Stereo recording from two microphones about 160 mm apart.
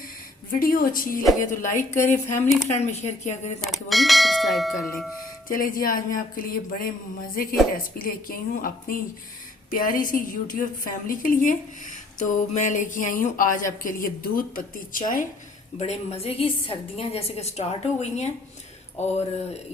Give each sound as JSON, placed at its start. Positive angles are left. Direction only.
{"t": 0.6, "sound": "speech", "side_deg": 65}
{"t": 3.6, "sound": "speech", "side_deg": 0}
{"t": 5.5, "sound": "speech", "side_deg": 60}
{"t": 7.9, "sound": "speech", "side_deg": 60}
{"t": 15.8, "sound": "a woman's voice", "side_deg": 40}